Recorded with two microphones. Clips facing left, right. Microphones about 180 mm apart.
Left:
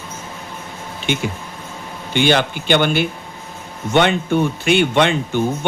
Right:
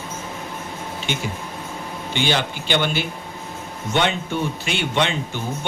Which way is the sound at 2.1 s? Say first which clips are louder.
Left 7 dB; 55° left (ahead or behind).